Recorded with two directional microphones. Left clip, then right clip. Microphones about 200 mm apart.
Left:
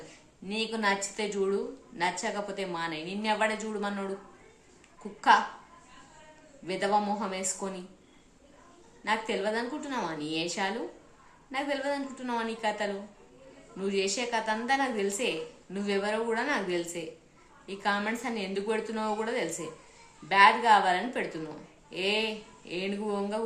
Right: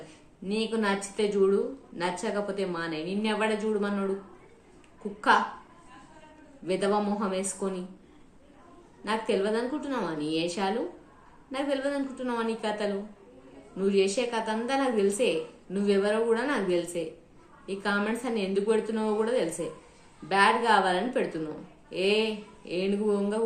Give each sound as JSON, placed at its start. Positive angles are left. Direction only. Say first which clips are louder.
{"t": 0.4, "sound": "a woman's voice", "louder": "right 1 dB", "side_deg": 15}
{"t": 6.7, "sound": "a woman's voice", "louder": "right 1 dB", "side_deg": 15}
{"t": 9.0, "sound": "a woman's voice", "louder": "right 2 dB", "side_deg": 15}